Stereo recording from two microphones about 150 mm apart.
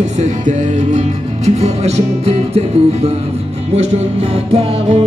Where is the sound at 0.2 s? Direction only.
50° right (ahead or behind).